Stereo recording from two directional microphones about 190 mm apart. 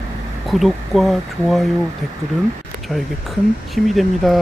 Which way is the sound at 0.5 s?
Centre (ahead or behind).